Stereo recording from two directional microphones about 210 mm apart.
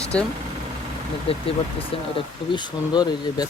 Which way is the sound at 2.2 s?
20° left (ahead or behind).